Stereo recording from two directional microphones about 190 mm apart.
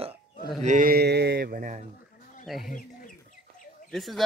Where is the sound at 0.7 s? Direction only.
45° right (ahead or behind).